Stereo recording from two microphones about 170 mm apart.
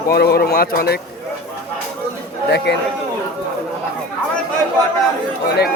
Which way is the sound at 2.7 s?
85° left.